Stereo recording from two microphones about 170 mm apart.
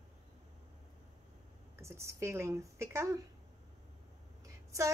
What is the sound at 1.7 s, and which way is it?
A woman's voice, 15° right (ahead or behind).